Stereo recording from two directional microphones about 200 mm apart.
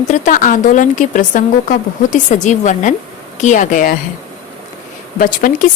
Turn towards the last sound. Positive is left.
turn(degrees=45)  # may be behind; listen again after turning